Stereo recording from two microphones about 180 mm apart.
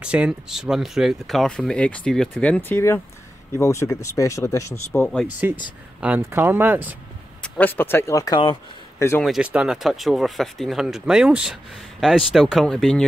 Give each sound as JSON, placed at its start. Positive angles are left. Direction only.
{"t": 0.0, "sound": "speech", "side_deg": -5}
{"t": 5.0, "sound": "speech", "side_deg": 5}
{"t": 5.9, "sound": "speech", "side_deg": -10}
{"t": 7.4, "sound": "speech", "side_deg": 10}
{"t": 9.2, "sound": "speech", "side_deg": -5}